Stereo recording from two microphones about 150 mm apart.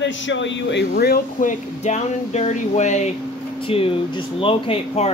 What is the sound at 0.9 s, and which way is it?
Speech, 85° left.